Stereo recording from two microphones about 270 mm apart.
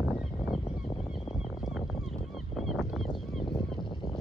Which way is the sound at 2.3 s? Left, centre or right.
Centre.